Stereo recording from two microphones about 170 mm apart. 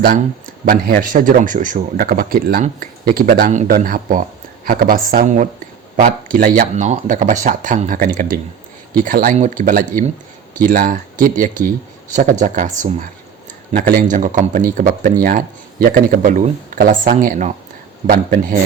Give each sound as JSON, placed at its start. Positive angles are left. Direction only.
{"t": 0.6, "sound": "speech", "side_deg": -55}
{"t": 13.7, "sound": "speech", "side_deg": -60}